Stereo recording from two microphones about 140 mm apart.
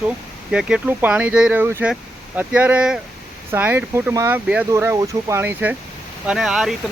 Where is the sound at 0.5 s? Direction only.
10° right (ahead or behind).